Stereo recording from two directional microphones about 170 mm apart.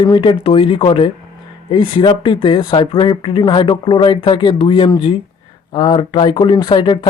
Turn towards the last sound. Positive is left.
turn(degrees=25)  # may be behind; listen again after turning